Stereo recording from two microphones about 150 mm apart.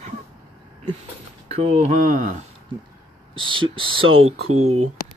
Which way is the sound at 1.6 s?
45° right (ahead or behind).